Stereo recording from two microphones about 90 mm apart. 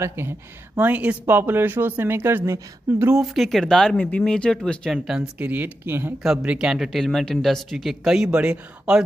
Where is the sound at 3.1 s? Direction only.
Centre (ahead or behind).